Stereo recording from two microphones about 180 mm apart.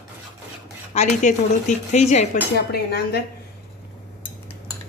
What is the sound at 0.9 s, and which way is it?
Speech, 40° left (ahead or behind).